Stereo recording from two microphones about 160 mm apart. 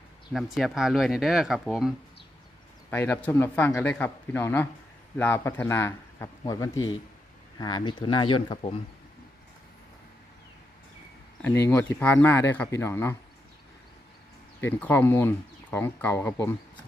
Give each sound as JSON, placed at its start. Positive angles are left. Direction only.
{"t": 0.3, "sound": "speech", "side_deg": 0}
{"t": 2.9, "sound": "speech", "side_deg": 10}
{"t": 11.7, "sound": "speech", "side_deg": 10}
{"t": 14.6, "sound": "speech", "side_deg": 10}